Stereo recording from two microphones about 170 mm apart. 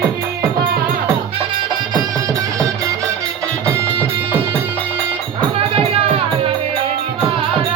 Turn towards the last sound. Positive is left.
turn(degrees=-35)  # may be behind; listen again after turning